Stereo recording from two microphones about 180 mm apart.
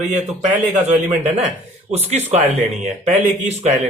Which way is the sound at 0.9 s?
40° right (ahead or behind).